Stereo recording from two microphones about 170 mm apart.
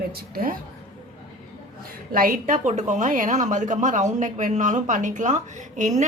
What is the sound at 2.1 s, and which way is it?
A woman's voice, 55° right (ahead or behind).